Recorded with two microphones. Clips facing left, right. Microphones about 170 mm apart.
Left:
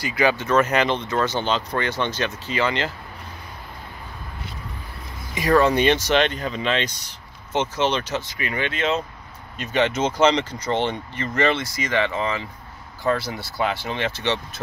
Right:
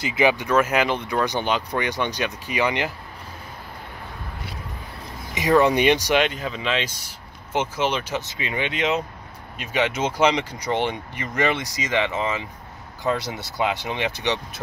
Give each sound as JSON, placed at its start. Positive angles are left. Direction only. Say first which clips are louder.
{"t": 0.0, "sound": "speech", "louder": "right 1 dB", "side_deg": -20}
{"t": 5.3, "sound": "speech", "louder": "even", "side_deg": -20}
{"t": 8.2, "sound": "speech", "louder": "left 1 dB", "side_deg": -20}